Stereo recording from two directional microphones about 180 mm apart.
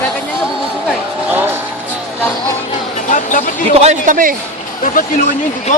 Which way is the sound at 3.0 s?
45° left (ahead or behind).